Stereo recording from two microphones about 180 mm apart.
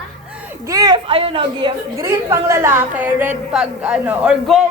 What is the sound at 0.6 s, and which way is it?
A woman's voice, 20° right (ahead or behind).